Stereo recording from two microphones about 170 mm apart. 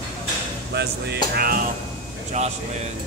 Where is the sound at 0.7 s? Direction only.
70° right (ahead or behind).